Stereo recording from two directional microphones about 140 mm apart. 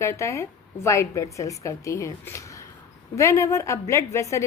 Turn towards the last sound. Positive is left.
turn(degrees=20)  # may be behind; listen again after turning